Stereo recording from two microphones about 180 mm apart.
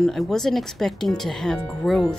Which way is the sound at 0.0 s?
Centre (ahead or behind).